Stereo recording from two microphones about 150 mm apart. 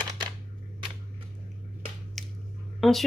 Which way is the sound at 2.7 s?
Centre (ahead or behind).